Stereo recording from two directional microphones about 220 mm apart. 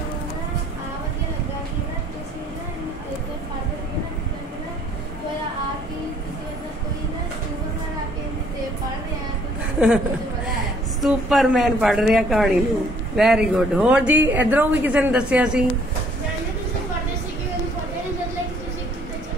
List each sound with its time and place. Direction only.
9.8 s a woman's voice: 5° right (ahead or behind)